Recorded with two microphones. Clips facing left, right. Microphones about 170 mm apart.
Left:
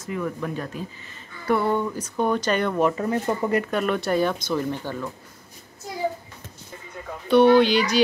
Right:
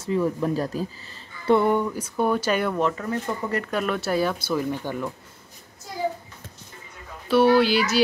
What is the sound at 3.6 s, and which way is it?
Speech, centre (ahead or behind).